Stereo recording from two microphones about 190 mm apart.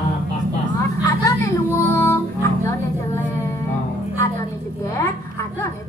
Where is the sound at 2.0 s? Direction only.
15° left (ahead or behind).